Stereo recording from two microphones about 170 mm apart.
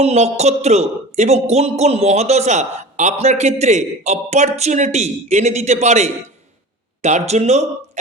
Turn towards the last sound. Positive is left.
turn(degrees=-40)  # may be behind; listen again after turning